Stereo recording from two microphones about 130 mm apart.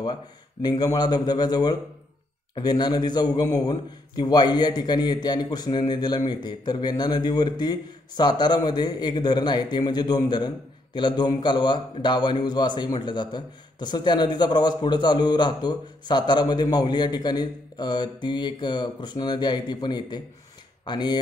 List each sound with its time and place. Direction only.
0.0 s a man's voice: 30° left (ahead or behind)